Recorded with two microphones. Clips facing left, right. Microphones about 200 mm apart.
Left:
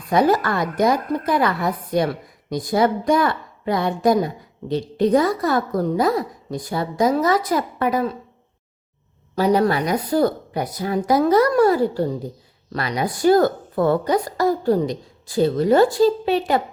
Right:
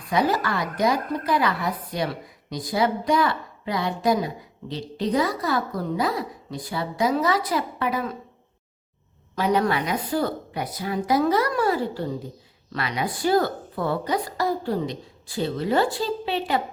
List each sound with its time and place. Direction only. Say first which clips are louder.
0.1 s a woman's voice: left 5 dB; 50° left (ahead or behind)
9.3 s a woman's voice: left 4 dB; 35° left (ahead or behind)